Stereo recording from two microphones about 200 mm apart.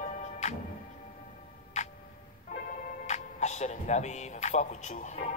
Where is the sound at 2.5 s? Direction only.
40° left (ahead or behind).